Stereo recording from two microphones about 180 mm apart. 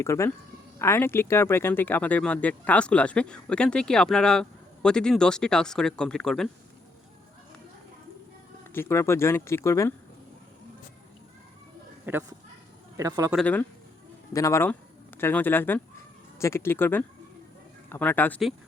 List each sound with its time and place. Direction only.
0.0 s speech: 15° left (ahead or behind)
8.7 s speech: 15° left (ahead or behind)
12.1 s speech: 10° right (ahead or behind)
13.3 s speech: 10° left (ahead or behind)